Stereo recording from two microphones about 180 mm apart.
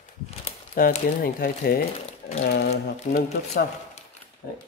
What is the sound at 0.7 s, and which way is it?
Speech, 55° left (ahead or behind).